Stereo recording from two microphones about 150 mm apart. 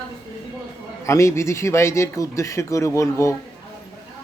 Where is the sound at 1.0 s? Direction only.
20° left (ahead or behind).